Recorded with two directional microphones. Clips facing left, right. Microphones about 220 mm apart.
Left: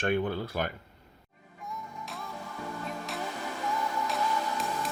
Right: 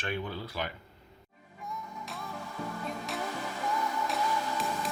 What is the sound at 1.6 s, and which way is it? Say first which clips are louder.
Music: even; centre (ahead or behind).